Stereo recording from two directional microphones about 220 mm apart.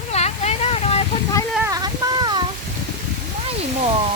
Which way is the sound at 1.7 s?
20° right (ahead or behind).